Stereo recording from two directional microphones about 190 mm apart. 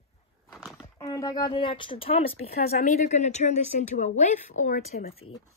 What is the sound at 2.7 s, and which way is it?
Speech, 40° left (ahead or behind).